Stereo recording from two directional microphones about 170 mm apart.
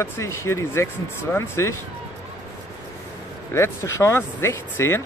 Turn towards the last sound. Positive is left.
turn(degrees=15)  # may be behind; listen again after turning